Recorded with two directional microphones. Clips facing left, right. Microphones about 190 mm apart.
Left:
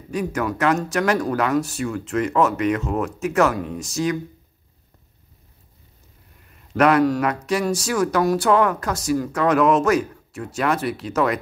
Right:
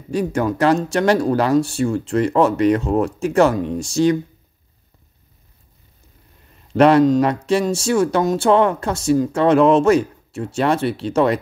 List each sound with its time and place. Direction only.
0.1 s speech: 30° right (ahead or behind)
6.7 s speech: 25° right (ahead or behind)